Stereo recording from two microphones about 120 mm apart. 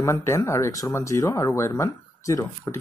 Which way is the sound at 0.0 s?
20° left (ahead or behind).